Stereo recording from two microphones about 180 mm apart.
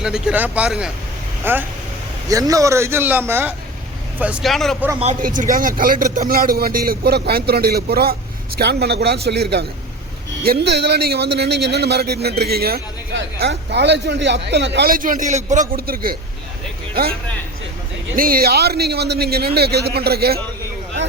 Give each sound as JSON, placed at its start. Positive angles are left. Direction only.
{"t": 0.0, "sound": "a man's voice", "side_deg": -5}
{"t": 5.2, "sound": "a man's voice", "side_deg": -50}
{"t": 15.7, "sound": "a man's voice", "side_deg": -55}
{"t": 18.2, "sound": "a man's voice", "side_deg": -55}